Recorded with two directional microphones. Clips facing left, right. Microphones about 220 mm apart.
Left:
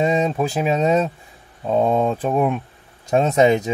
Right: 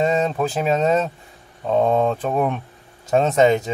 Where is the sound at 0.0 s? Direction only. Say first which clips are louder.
Left 1 dB; 10° left (ahead or behind).